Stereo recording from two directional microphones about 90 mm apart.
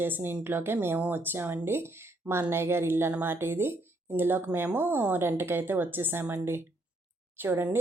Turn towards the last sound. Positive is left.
turn(degrees=-25)  # may be behind; listen again after turning